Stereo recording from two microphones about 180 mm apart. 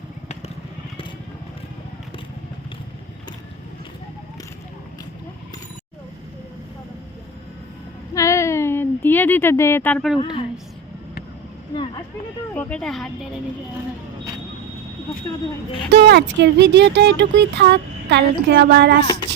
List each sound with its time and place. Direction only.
8.1 s a sound: 15° left (ahead or behind)
12.5 s speech: 10° left (ahead or behind)
15.9 s speech: 65° right (ahead or behind)